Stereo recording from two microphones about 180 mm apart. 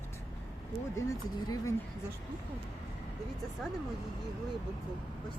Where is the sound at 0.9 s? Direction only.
20° left (ahead or behind).